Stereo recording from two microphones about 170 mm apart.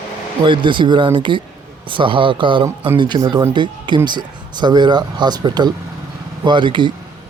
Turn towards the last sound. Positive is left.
turn(degrees=-25)  # may be behind; listen again after turning